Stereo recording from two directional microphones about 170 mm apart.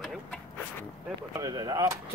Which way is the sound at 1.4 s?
20° right (ahead or behind).